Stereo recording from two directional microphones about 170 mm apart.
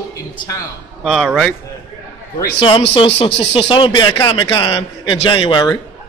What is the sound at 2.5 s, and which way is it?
Speech, 30° left (ahead or behind).